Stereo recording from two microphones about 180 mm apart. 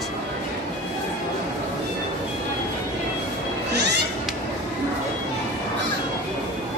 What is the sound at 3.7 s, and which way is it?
Cat, 70° right (ahead or behind).